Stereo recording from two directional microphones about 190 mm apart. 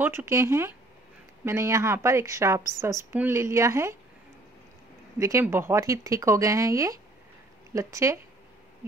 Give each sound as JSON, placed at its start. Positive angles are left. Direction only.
{"t": 0.0, "sound": "a woman's voice", "side_deg": -15}
{"t": 5.2, "sound": "a woman's voice", "side_deg": -15}